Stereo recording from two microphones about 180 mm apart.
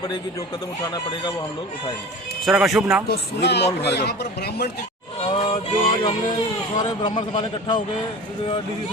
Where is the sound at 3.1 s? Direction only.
70° left (ahead or behind).